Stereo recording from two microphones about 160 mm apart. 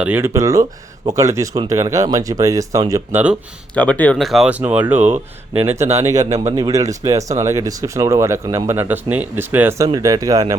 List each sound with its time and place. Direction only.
0.0 s speech: 15° right (ahead or behind)
3.8 s speech: 10° left (ahead or behind); by 5.0 s 10° right (ahead or behind)
5.0 s speech: 45° right (ahead or behind)
6.1 s speech: 20° right (ahead or behind)